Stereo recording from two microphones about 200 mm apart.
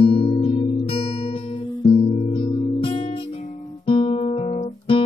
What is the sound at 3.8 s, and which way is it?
Guitar, 30° left (ahead or behind).